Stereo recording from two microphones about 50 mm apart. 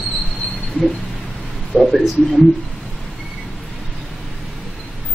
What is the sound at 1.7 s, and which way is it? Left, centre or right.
Speech, left.